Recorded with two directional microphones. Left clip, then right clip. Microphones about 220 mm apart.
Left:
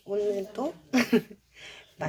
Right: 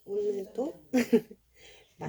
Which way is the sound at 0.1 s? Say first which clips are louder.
Left 3 dB; 5° right (ahead or behind).